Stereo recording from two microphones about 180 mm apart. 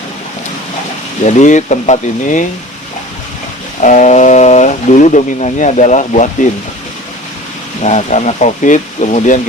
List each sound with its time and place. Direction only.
1.2 s speech: 40° left (ahead or behind)
3.8 s speech: 45° left (ahead or behind)
7.8 s speech: 40° left (ahead or behind)